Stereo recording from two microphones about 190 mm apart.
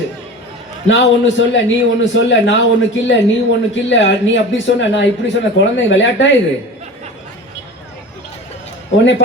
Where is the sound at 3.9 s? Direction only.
75° left (ahead or behind).